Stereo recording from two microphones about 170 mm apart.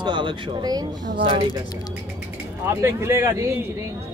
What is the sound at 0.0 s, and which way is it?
Speech, 30° right (ahead or behind).